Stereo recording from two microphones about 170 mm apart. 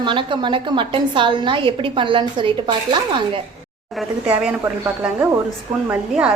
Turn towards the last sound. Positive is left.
turn(degrees=-5)  # may be behind; listen again after turning